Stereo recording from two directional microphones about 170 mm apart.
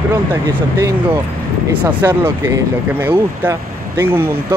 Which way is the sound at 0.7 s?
15° right (ahead or behind).